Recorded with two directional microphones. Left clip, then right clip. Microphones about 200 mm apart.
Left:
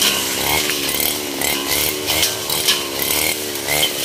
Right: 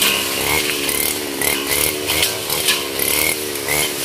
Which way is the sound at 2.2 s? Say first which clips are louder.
Even; 50° left (ahead or behind).